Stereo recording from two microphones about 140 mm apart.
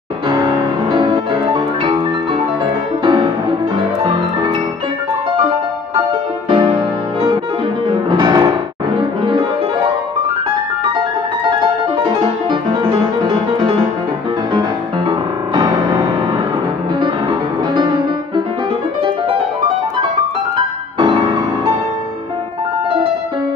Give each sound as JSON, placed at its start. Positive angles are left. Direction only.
{"t": 0.9, "sound": "music", "side_deg": -35}
{"t": 3.0, "sound": "music", "side_deg": -35}
{"t": 6.5, "sound": "music", "side_deg": -35}
{"t": 12.4, "sound": "music", "side_deg": -35}
{"t": 15.0, "sound": "music", "side_deg": -35}
{"t": 17.7, "sound": "music", "side_deg": -30}